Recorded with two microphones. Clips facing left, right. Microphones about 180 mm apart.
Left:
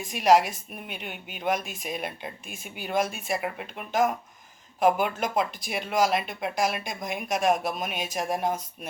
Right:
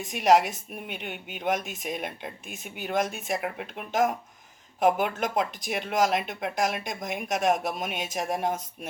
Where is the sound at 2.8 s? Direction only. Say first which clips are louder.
Even; centre (ahead or behind).